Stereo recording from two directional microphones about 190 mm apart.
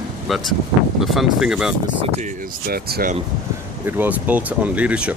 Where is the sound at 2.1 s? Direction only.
45° right (ahead or behind).